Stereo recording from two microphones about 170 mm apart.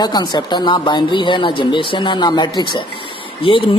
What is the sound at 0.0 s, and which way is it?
Speech, 25° left (ahead or behind).